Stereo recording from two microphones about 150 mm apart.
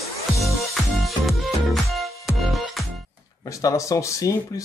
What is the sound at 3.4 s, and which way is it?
Speech, 20° left (ahead or behind).